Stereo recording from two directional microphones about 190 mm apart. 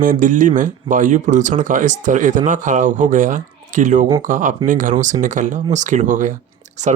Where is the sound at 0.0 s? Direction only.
45° right (ahead or behind).